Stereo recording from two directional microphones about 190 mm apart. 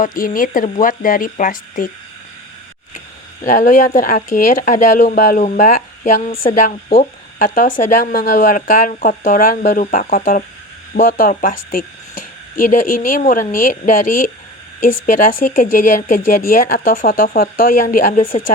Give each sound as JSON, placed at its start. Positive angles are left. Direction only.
{"t": 0.0, "sound": "speech", "side_deg": 45}
{"t": 3.4, "sound": "speech", "side_deg": 45}